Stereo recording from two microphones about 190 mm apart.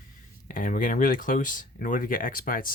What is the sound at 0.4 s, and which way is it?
Speech, 45° left (ahead or behind).